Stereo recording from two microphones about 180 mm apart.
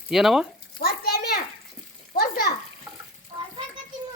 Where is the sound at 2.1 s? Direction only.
55° left (ahead or behind).